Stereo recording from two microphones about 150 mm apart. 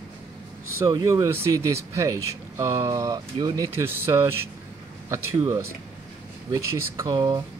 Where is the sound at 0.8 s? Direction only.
25° right (ahead or behind).